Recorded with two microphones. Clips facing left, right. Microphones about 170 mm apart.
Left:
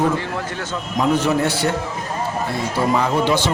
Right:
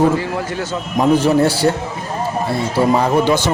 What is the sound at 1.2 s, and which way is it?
Speech, 30° right (ahead or behind).